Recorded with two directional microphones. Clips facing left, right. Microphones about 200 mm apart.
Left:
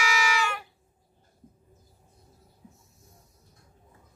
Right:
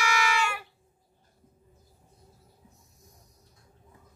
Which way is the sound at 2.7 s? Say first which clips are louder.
Left 1 dB; 15° right (ahead or behind).